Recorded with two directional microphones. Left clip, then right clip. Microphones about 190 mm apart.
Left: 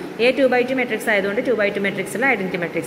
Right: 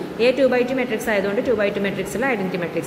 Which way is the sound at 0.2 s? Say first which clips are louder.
Left 1 dB; 15° left (ahead or behind).